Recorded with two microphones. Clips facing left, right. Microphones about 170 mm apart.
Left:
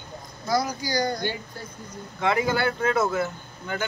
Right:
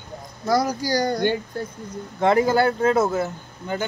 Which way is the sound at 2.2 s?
40° right (ahead or behind).